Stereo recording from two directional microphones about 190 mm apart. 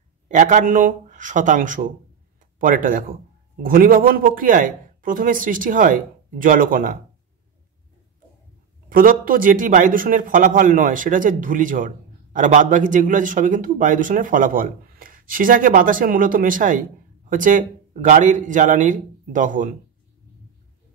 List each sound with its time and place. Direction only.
0.3 s a man's voice: 40° right (ahead or behind)
8.8 s a man's voice: 50° right (ahead or behind)